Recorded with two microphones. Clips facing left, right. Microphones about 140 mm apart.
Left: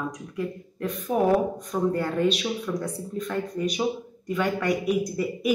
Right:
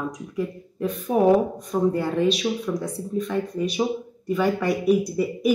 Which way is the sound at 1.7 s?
5° right (ahead or behind).